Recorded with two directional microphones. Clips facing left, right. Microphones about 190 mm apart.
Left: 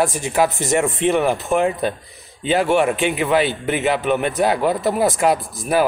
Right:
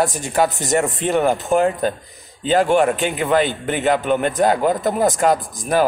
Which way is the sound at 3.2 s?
5° left (ahead or behind).